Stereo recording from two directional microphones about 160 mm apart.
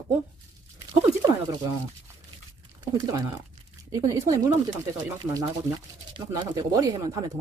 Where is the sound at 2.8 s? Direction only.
25° right (ahead or behind).